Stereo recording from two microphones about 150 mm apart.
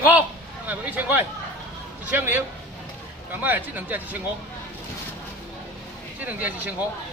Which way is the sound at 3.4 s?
10° right (ahead or behind).